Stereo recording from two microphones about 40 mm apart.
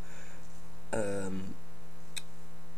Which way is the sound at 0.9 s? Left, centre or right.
Centre.